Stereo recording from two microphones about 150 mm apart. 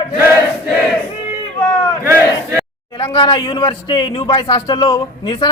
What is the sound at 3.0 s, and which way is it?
A man's voice, 35° left (ahead or behind).